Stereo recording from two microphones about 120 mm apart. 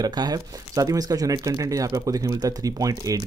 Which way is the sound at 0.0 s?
35° right (ahead or behind).